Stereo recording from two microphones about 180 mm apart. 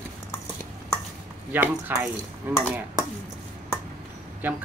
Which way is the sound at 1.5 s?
10° right (ahead or behind).